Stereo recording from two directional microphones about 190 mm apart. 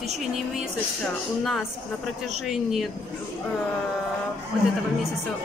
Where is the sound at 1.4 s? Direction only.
Centre (ahead or behind).